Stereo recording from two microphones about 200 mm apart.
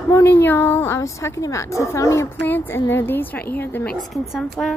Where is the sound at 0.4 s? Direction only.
10° left (ahead or behind).